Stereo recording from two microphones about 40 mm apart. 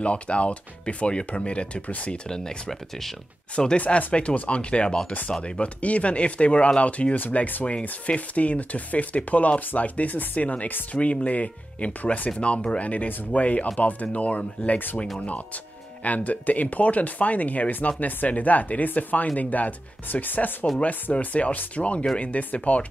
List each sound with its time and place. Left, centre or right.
0.0 s speech: left
2.2 s speech: centre
2.7 s speech: centre
3.5 s speech: left